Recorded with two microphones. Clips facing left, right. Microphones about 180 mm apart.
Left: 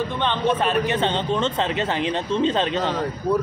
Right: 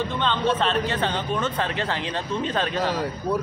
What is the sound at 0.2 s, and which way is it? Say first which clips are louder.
A man's voice: left 2 dB; 15° left (ahead or behind).